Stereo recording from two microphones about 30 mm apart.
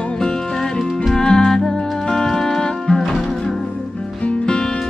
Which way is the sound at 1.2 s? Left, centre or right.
Centre.